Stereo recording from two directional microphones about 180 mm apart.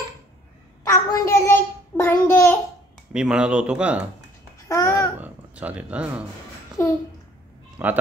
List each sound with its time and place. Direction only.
0.8 s child singing: 15° left (ahead or behind)
3.1 s speech: 5° right (ahead or behind)
4.6 s babbling: 15° left (ahead or behind)
5.2 s speech: 10° right (ahead or behind)
6.8 s a sound: 15° left (ahead or behind)
7.8 s a man's voice: 10° right (ahead or behind)